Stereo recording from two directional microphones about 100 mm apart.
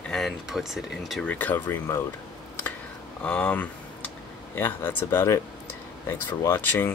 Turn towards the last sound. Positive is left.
turn(degrees=20)  # may be behind; listen again after turning